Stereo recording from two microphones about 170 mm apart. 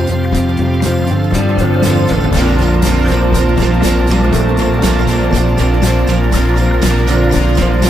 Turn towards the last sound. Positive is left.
turn(degrees=0)  # may be behind; listen again after turning